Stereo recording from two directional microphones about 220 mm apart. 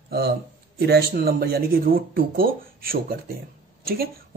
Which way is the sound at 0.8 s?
45° right (ahead or behind).